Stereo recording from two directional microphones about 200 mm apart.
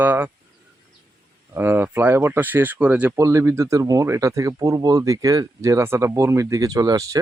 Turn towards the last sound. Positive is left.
turn(degrees=-15)  # may be behind; listen again after turning